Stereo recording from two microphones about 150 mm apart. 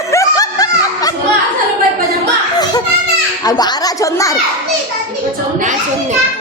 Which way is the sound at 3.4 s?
25° left (ahead or behind).